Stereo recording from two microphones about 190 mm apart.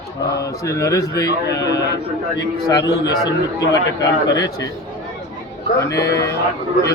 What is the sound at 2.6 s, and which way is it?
Speech, 20° left (ahead or behind).